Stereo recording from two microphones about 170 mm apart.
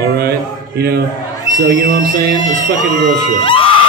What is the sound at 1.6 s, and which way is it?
Speech, 75° right (ahead or behind).